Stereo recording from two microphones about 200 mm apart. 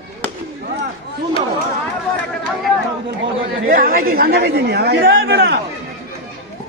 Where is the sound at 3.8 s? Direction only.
45° right (ahead or behind).